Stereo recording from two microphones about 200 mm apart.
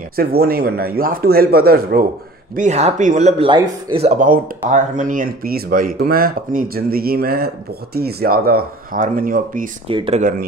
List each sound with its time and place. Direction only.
0.1 s speech: 50° right (ahead or behind)
2.5 s speech: 35° right (ahead or behind)
9.8 s speech: 30° right (ahead or behind)